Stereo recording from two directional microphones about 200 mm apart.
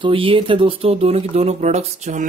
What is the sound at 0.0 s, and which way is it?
Speech, 25° right (ahead or behind).